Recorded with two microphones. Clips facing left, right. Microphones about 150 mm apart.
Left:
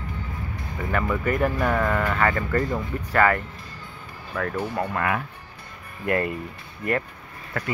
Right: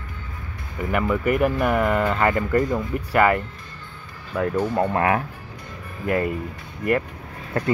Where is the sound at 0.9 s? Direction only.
15° right (ahead or behind).